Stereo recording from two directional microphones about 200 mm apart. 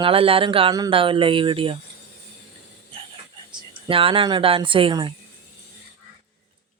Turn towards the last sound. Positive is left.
turn(degrees=-25)  # may be behind; listen again after turning